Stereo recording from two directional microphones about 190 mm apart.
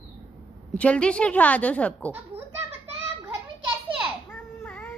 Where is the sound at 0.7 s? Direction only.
5° left (ahead or behind).